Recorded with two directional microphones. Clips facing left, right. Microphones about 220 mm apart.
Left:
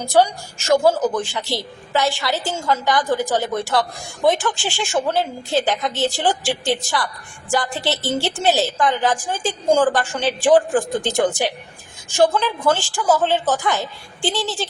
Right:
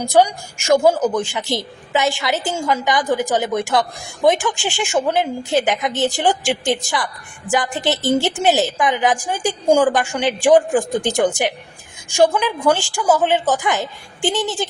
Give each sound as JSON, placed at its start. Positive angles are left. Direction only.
{"t": 0.0, "sound": "a woman's voice", "side_deg": -15}